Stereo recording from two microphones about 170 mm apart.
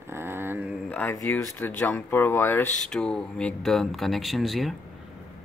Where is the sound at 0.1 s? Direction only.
15° right (ahead or behind).